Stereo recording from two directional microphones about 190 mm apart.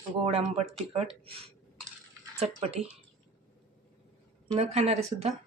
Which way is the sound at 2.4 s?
35° right (ahead or behind).